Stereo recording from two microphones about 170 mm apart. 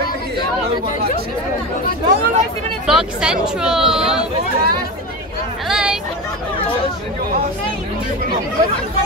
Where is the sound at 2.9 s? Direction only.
5° right (ahead or behind).